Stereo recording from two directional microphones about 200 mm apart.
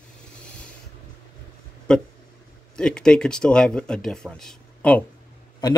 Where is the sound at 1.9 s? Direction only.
5° left (ahead or behind).